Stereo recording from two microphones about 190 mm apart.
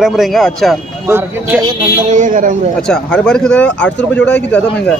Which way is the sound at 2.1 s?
45° right (ahead or behind).